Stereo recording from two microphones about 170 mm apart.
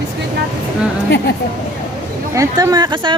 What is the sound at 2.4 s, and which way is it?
Speech, 20° right (ahead or behind).